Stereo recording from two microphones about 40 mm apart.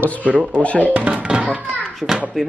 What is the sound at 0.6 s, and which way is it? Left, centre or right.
Speech, left.